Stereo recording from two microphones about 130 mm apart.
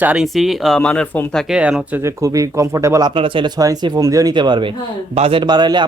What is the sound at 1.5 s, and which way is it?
Speech, 10° right (ahead or behind).